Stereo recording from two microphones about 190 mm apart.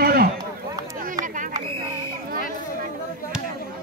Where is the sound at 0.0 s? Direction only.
50° right (ahead or behind).